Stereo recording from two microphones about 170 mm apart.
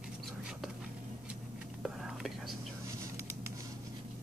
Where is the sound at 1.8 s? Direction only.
Centre (ahead or behind).